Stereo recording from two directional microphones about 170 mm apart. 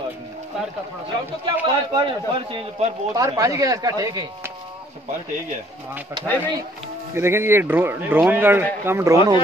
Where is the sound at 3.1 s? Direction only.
20° right (ahead or behind).